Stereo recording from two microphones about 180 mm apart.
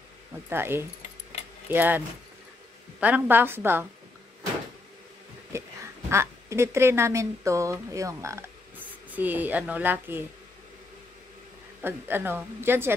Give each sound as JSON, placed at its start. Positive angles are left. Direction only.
{"t": 0.5, "sound": "speech", "side_deg": -15}
{"t": 5.5, "sound": "speech", "side_deg": -15}
{"t": 11.8, "sound": "speech", "side_deg": -10}